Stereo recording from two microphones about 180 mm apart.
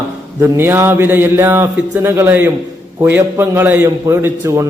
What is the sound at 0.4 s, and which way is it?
A man's voice, 15° right (ahead or behind).